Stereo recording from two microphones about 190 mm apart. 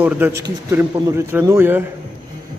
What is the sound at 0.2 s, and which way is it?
Speech, 10° right (ahead or behind).